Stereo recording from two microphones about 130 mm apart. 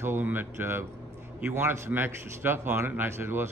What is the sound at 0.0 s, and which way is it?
Speech, 15° right (ahead or behind).